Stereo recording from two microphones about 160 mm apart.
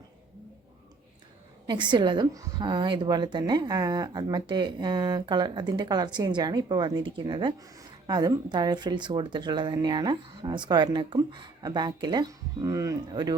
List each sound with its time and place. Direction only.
1.6 s a woman's voice: 30° right (ahead or behind)